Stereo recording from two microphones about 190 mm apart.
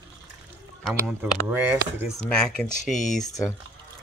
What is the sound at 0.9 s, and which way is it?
Speech, 10° right (ahead or behind).